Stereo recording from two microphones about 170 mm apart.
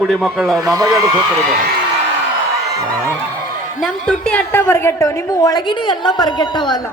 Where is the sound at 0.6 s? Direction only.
20° right (ahead or behind).